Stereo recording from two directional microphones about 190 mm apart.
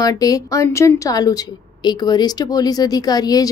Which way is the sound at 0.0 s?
20° left (ahead or behind).